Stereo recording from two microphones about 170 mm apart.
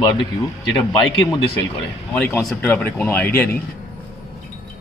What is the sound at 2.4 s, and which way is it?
Speech, 5° left (ahead or behind).